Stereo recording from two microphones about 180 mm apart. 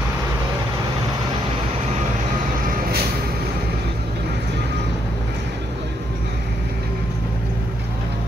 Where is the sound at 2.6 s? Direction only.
60° right (ahead or behind).